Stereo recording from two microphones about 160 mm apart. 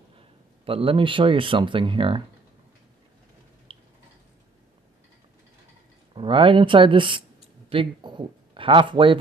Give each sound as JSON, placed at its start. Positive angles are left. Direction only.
{"t": 0.7, "sound": "speech", "side_deg": -35}
{"t": 3.7, "sound": "tick-tock", "side_deg": -35}
{"t": 6.1, "sound": "speech", "side_deg": -30}